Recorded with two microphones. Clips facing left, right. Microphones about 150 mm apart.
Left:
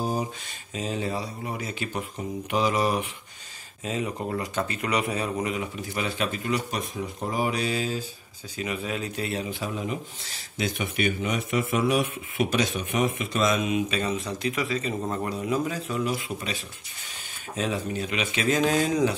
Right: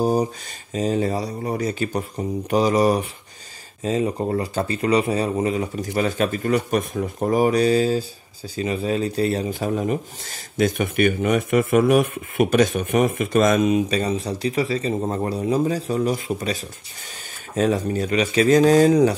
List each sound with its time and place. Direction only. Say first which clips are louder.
0.0 s speech: right 8 dB; 40° right (ahead or behind)
17.6 s speech: right 8 dB; 45° right (ahead or behind)